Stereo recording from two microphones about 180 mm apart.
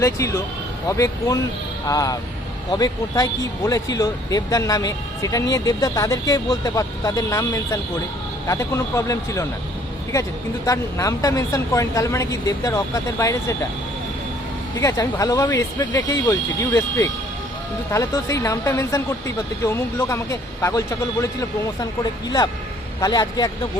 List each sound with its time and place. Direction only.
0.0 s speech: 15° left (ahead or behind)
10.7 s speech: 20° left (ahead or behind)
14.8 s speech: 20° left (ahead or behind)
23.0 s speech: 20° left (ahead or behind)